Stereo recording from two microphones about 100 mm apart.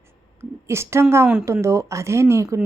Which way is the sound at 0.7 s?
25° right (ahead or behind).